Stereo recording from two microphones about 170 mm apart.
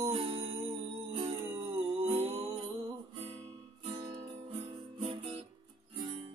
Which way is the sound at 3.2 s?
30° right (ahead or behind).